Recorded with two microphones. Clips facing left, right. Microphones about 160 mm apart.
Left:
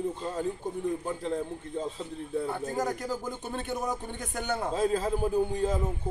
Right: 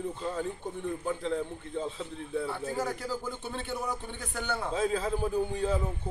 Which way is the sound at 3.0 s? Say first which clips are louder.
Left 1 dB; 15° left (ahead or behind).